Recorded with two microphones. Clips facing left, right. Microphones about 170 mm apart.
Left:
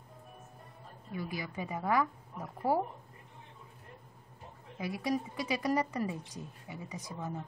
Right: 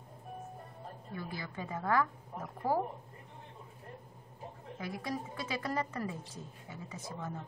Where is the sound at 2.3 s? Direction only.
35° right (ahead or behind).